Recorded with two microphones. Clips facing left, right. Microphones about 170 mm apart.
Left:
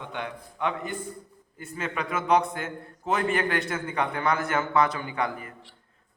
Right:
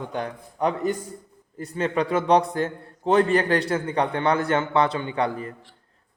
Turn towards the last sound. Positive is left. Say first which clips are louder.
# right 5 dB
turn(degrees=-30)  # may be behind; listen again after turning